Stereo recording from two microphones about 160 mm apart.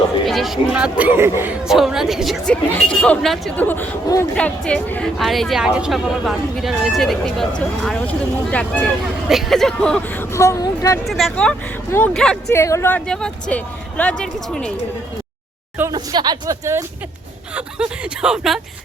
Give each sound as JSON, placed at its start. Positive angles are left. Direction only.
{"t": 0.3, "sound": "speech", "side_deg": 0}
{"t": 1.6, "sound": "speech", "side_deg": -5}
{"t": 10.3, "sound": "speech", "side_deg": 20}
{"t": 11.0, "sound": "speech", "side_deg": 0}
{"t": 12.5, "sound": "speech", "side_deg": 20}
{"t": 13.1, "sound": "speech", "side_deg": 5}
{"t": 15.9, "sound": "speech", "side_deg": -25}
{"t": 17.5, "sound": "speech", "side_deg": -5}